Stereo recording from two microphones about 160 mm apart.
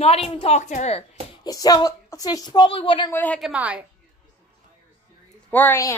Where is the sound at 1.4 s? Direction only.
25° left (ahead or behind).